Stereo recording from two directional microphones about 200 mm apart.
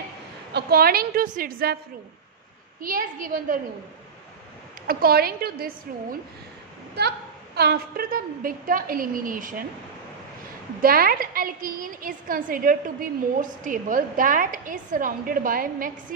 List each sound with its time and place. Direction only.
0.5 s a woman's voice: 50° right (ahead or behind)
2.8 s a woman's voice: 45° right (ahead or behind)
4.8 s a woman's voice: 50° right (ahead or behind)
10.8 s a woman's voice: 45° right (ahead or behind)